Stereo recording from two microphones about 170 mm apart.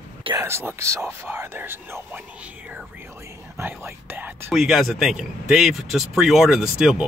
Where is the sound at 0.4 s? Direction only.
15° right (ahead or behind).